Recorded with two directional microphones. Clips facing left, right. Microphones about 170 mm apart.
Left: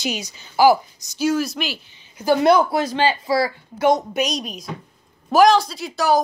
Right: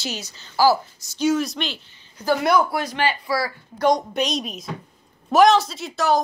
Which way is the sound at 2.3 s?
25° left (ahead or behind).